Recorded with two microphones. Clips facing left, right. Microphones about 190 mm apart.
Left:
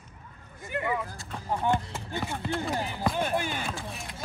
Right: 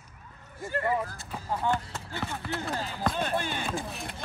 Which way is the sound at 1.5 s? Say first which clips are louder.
Left 2 dB; 15° left (ahead or behind).